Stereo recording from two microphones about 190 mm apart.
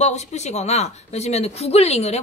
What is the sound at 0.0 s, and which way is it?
Speech, 35° left (ahead or behind).